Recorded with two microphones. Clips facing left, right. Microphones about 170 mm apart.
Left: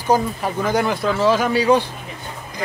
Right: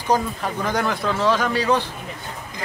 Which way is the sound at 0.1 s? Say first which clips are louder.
Left 3 dB; 5° left (ahead or behind).